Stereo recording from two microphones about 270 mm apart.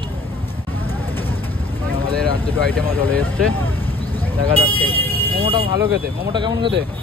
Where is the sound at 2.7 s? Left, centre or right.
Centre.